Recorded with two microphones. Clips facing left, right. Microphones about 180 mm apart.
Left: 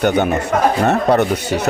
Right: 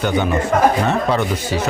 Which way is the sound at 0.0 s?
60° left (ahead or behind).